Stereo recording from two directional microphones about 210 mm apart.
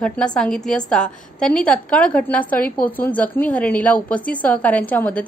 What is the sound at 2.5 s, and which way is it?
Speech, 45° left (ahead or behind).